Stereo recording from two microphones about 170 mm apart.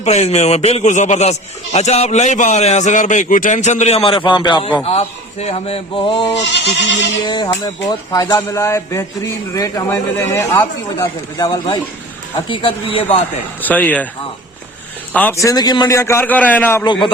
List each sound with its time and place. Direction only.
0.0 s a man's voice: 40° left (ahead or behind)
4.8 s a man's voice: 40° left (ahead or behind)
6.3 s speech: 90° left
7.3 s a man's voice: 20° left (ahead or behind)
11.0 s a man's voice: 30° left (ahead or behind)
13.6 s a man's voice: 10° left (ahead or behind)
15.1 s a man's voice: 10° left (ahead or behind)